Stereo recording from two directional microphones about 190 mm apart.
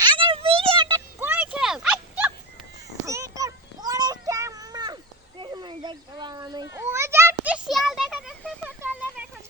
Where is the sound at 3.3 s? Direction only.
20° right (ahead or behind).